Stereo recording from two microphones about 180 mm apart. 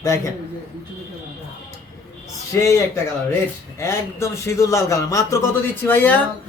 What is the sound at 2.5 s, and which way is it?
A man's voice, 15° left (ahead or behind).